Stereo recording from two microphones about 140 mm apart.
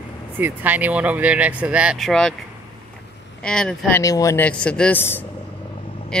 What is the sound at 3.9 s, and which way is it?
Speech, 25° left (ahead or behind).